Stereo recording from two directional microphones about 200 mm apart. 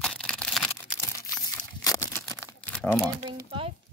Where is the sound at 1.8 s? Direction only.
15° left (ahead or behind).